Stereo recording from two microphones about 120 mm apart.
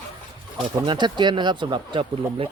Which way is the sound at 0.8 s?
40° right (ahead or behind).